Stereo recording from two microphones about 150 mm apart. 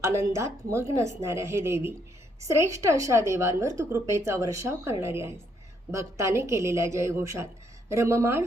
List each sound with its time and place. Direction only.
0.0 s a woman's voice: 20° right (ahead or behind)